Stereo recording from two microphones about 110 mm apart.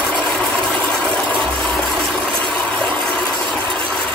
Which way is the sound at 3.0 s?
10° left (ahead or behind).